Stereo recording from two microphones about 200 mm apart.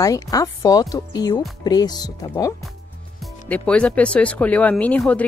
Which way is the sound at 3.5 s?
5° left (ahead or behind).